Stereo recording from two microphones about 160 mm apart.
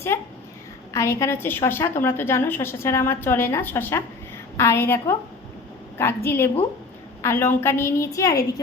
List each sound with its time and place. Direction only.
0.1 s a woman's voice: 15° left (ahead or behind)